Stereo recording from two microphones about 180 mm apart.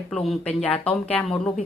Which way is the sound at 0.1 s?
Centre (ahead or behind).